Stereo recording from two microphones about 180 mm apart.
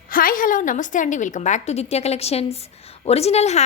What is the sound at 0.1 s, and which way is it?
A woman's voice, 50° left (ahead or behind).